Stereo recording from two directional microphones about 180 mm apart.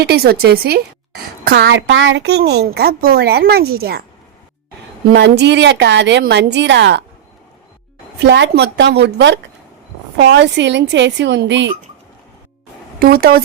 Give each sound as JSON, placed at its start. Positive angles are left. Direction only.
{"t": 0.0, "sound": "a woman's voice", "side_deg": -60}
{"t": 5.1, "sound": "a woman's voice", "side_deg": -70}
{"t": 8.2, "sound": "a woman's voice", "side_deg": -70}
{"t": 13.0, "sound": "a woman's voice", "side_deg": -55}